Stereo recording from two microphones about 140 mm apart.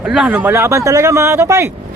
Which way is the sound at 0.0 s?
5° right (ahead or behind).